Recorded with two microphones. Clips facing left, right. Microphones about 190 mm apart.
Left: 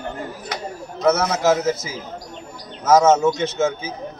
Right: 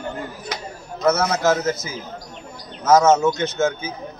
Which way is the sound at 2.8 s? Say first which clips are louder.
Even; 5° left (ahead or behind).